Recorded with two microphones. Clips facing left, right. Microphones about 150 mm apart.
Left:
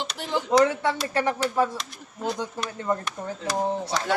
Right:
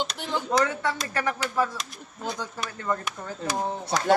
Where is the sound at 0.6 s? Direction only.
25° left (ahead or behind).